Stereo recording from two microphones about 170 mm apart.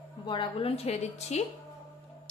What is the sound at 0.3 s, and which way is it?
A woman's voice, 30° left (ahead or behind).